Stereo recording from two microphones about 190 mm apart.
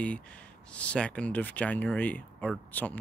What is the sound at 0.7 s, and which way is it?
Speech, 5° left (ahead or behind).